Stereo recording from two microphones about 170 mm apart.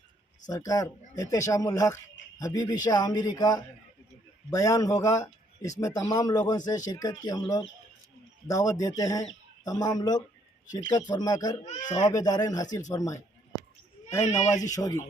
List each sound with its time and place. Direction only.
0.4 s a man's voice: 20° left (ahead or behind)
14.4 s speech: 45° left (ahead or behind)
14.7 s a man's voice: 20° left (ahead or behind)